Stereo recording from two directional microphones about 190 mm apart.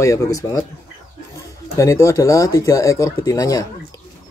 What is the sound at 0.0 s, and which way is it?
Speech, 15° left (ahead or behind).